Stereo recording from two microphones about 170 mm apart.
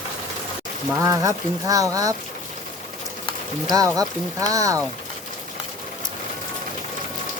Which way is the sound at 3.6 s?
20° right (ahead or behind).